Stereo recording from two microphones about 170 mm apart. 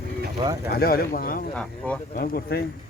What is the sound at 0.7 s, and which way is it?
Speech, 60° left (ahead or behind).